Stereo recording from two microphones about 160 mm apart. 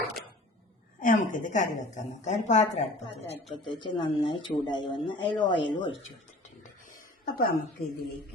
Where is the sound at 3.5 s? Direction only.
30° left (ahead or behind).